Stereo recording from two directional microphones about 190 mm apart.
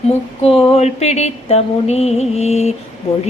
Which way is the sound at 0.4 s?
30° left (ahead or behind).